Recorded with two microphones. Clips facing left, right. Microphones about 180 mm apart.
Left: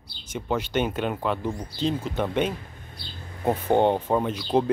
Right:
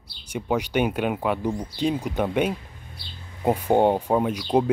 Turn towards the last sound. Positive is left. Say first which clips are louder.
# right 2 dB
turn(degrees=-10)  # may be behind; listen again after turning